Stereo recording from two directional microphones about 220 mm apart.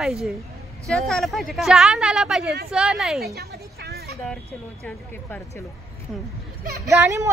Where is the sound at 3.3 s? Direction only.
45° right (ahead or behind).